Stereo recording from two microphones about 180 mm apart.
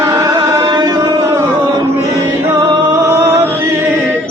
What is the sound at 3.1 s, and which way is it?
Chant, 10° right (ahead or behind).